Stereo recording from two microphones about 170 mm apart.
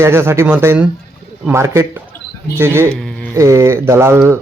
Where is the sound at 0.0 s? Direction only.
15° right (ahead or behind).